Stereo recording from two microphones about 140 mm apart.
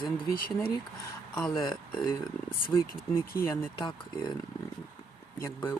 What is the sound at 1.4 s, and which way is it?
Speech, 30° left (ahead or behind).